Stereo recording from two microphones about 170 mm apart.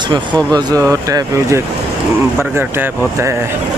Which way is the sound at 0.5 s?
20° right (ahead or behind).